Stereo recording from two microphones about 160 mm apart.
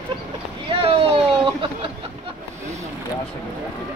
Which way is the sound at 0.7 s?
35° right (ahead or behind).